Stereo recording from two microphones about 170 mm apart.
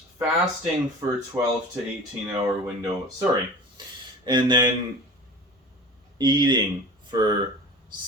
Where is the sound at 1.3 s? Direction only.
10° right (ahead or behind).